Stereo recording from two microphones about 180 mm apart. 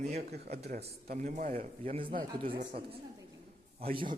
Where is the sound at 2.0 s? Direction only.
55° right (ahead or behind).